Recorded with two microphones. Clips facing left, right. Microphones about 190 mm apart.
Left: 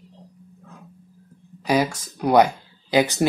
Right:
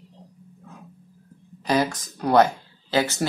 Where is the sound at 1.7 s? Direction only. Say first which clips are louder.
Left 1 dB; 10° left (ahead or behind).